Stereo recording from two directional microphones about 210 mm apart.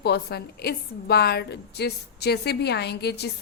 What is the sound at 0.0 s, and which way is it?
A woman's voice, 50° left (ahead or behind).